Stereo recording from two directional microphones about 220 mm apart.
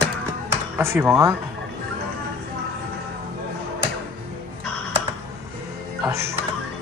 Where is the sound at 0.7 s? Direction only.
10° right (ahead or behind).